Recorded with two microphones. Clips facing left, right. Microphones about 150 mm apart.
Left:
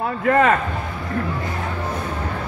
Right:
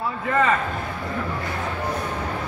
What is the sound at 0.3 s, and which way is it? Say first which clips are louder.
Speech: left 5 dB; 55° left (ahead or behind).